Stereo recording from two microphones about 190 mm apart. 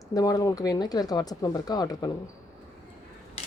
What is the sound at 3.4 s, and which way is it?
Mechanisms, 30° left (ahead or behind).